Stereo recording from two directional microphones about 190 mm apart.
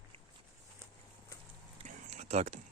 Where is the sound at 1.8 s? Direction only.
35° right (ahead or behind).